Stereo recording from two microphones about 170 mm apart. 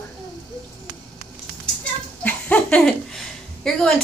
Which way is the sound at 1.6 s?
5° left (ahead or behind).